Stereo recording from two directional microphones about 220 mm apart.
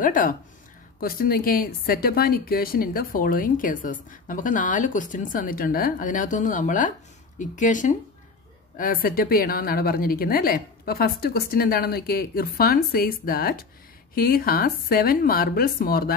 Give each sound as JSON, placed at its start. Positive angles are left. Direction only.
{"t": 0.0, "sound": "a woman's voice", "side_deg": 40}